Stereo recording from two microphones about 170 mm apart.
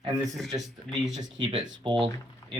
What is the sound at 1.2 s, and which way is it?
Speech, 25° right (ahead or behind).